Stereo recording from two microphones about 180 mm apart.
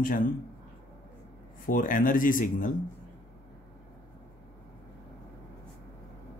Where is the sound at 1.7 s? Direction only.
50° left (ahead or behind).